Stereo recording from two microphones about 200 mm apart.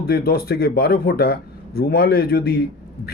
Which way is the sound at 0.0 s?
50° left (ahead or behind).